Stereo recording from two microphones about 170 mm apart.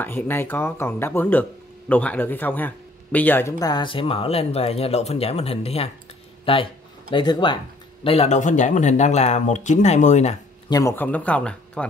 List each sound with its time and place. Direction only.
0.0 s speech: 10° left (ahead or behind); by 10.3 s 45° left (ahead or behind)
10.7 s speech: 15° left (ahead or behind)